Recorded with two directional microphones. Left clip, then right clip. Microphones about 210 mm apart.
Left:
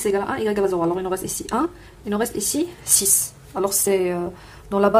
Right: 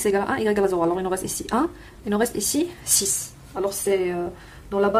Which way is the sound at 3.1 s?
20° left (ahead or behind).